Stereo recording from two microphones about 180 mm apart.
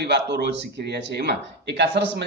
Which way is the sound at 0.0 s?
70° right (ahead or behind).